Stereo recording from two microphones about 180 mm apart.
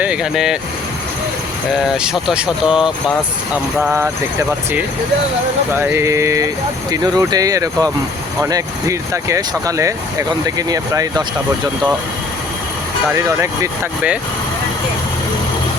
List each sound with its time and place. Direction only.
0.0 s speech: 5° right (ahead or behind)
2.0 s speech: 5° right (ahead or behind)
5.7 s speech: 10° right (ahead or behind)
13.1 s speech: 15° right (ahead or behind)